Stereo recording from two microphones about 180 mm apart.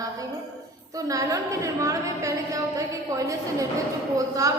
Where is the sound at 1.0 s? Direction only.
20° right (ahead or behind).